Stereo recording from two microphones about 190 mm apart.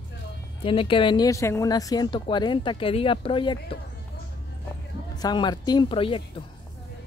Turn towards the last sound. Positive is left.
turn(degrees=30)  # may be behind; listen again after turning